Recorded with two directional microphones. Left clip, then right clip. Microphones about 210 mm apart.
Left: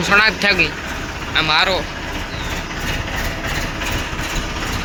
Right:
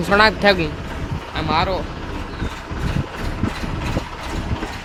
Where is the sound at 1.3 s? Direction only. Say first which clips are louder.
Left 5 dB; 5° right (ahead or behind).